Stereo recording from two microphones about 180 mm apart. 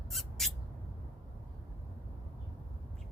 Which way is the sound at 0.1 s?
Centre (ahead or behind).